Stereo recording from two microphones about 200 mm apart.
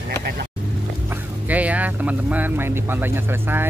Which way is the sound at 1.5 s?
5° right (ahead or behind).